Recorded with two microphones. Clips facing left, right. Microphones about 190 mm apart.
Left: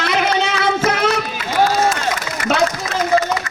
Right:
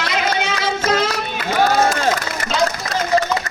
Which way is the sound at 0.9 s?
60° left (ahead or behind).